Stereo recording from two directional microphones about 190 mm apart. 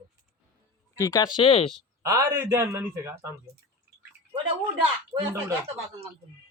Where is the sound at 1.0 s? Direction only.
20° left (ahead or behind).